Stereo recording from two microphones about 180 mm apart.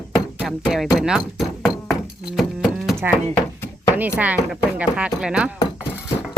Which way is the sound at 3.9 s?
10° right (ahead or behind).